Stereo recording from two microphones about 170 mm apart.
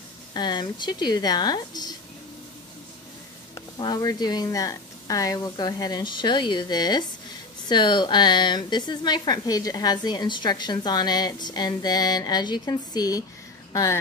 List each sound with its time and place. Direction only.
0.3 s speech: 25° left (ahead or behind)
3.5 s speech: 25° left (ahead or behind)